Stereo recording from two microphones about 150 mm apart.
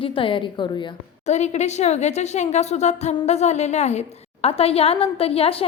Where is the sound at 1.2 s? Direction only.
50° left (ahead or behind).